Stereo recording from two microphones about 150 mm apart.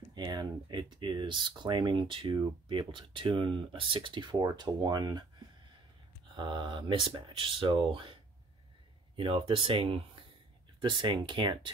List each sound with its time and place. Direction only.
0.1 s speech: 30° right (ahead or behind)
6.3 s speech: 30° right (ahead or behind)